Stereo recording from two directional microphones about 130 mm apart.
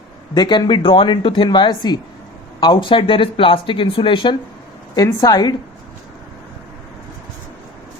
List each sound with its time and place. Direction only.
0.3 s speech: 35° left (ahead or behind)
4.9 s a woman's voice: 30° left (ahead or behind)